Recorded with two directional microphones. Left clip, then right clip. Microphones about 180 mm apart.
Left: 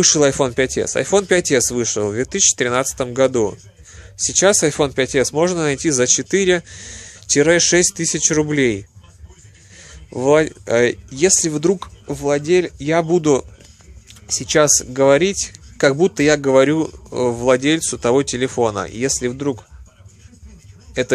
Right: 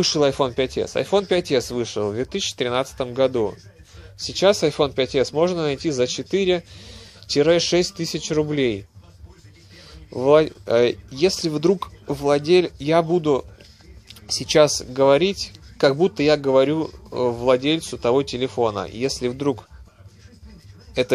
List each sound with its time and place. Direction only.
0.0 s speech: 20° left (ahead or behind)
10.1 s speech: 15° left (ahead or behind)
13.2 s speech: 25° left (ahead or behind)
14.2 s speech: 10° left (ahead or behind)
19.3 s speech: 5° left (ahead or behind)
21.0 s speech: 15° left (ahead or behind)